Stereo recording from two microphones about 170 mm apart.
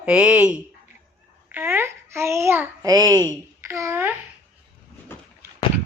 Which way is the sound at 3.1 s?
15° left (ahead or behind).